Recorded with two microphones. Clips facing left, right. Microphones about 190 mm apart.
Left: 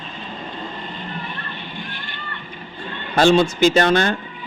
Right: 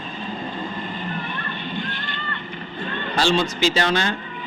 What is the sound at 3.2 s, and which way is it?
Speech, 50° left (ahead or behind).